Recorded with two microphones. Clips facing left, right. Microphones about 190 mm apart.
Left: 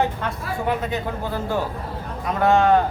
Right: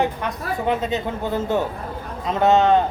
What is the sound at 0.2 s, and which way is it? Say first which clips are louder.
A man's voice: right 1 dB; 20° right (ahead or behind).